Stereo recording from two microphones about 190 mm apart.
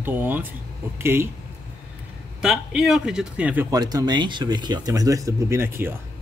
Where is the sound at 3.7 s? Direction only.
20° right (ahead or behind).